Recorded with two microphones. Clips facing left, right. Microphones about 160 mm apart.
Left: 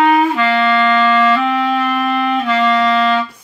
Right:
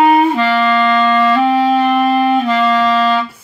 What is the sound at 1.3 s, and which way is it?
Clarinet, 35° right (ahead or behind).